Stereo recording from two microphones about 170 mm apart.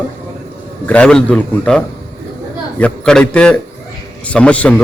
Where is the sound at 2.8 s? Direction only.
5° left (ahead or behind).